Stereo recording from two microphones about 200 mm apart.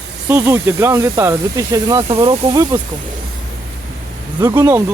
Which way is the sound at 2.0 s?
30° right (ahead or behind).